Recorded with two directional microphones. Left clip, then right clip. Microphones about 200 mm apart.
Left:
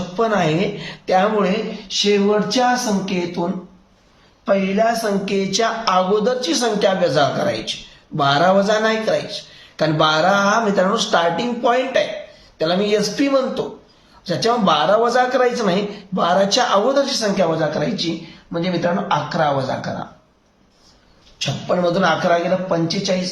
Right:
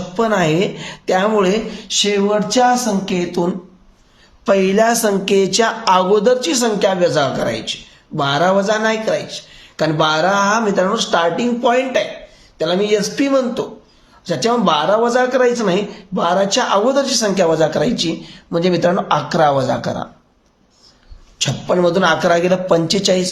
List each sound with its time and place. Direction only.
0.2 s speech: 40° right (ahead or behind)
1.9 s speech: 55° right (ahead or behind)
21.3 s speech: 45° right (ahead or behind); by 23.1 s 60° right (ahead or behind)